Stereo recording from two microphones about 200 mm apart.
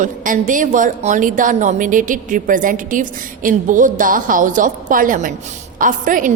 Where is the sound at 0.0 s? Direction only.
40° right (ahead or behind).